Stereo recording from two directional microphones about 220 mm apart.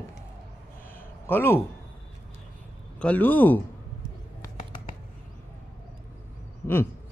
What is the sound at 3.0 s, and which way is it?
Speech, 5° left (ahead or behind).